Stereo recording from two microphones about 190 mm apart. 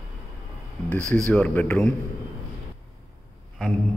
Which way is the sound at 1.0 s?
15° right (ahead or behind).